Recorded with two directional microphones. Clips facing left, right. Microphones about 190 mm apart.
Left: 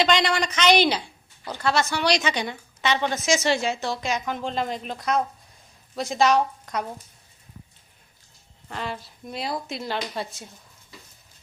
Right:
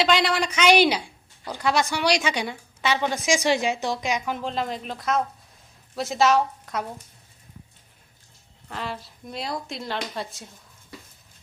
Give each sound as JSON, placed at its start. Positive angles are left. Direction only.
{"t": 0.0, "sound": "a woman's voice", "side_deg": -5}
{"t": 4.4, "sound": "speech", "side_deg": 0}
{"t": 8.7, "sound": "speech", "side_deg": 0}